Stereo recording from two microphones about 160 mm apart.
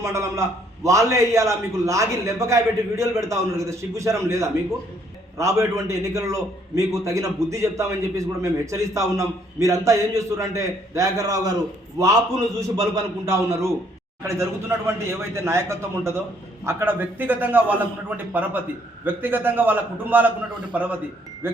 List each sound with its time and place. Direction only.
0.0 s a man's voice: 20° right (ahead or behind)
12.5 s a man's voice: 20° right (ahead or behind)